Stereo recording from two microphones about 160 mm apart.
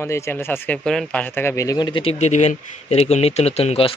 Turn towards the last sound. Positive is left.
turn(degrees=40)  # may be behind; listen again after turning